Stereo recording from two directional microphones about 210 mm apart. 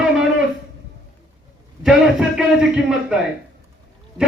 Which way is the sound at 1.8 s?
5° right (ahead or behind).